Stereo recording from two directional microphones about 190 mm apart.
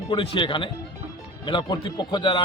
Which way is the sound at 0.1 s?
25° left (ahead or behind).